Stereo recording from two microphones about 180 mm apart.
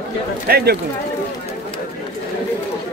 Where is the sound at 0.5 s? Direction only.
60° right (ahead or behind).